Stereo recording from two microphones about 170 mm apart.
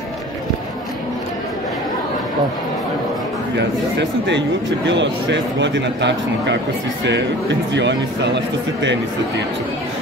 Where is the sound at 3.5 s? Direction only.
90° right.